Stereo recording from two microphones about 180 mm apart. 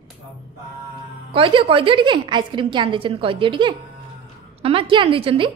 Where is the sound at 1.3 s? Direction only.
30° right (ahead or behind).